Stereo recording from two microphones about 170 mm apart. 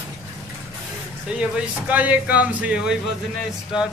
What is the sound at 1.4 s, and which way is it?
A man's voice, 5° right (ahead or behind).